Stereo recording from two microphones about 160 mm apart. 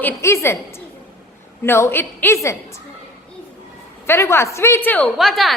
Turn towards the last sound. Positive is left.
turn(degrees=0)  # may be behind; listen again after turning